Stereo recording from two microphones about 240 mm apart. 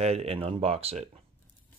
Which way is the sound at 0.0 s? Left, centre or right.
Right.